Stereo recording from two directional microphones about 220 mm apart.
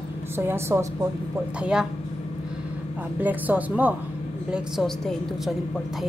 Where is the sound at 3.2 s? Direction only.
5° right (ahead or behind).